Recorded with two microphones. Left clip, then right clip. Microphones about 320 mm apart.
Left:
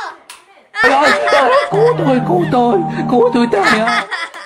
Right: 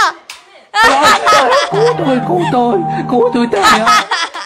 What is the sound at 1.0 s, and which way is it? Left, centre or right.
Speech, centre.